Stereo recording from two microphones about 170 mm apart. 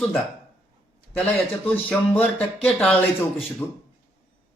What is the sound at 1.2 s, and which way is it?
A man's voice, 10° left (ahead or behind).